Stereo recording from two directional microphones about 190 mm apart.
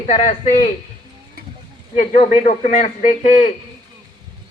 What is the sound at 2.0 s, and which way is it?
A man's voice, 35° left (ahead or behind).